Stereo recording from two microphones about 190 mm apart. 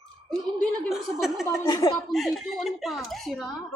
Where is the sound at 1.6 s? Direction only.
20° left (ahead or behind).